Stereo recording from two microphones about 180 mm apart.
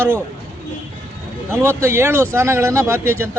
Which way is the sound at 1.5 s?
15° right (ahead or behind).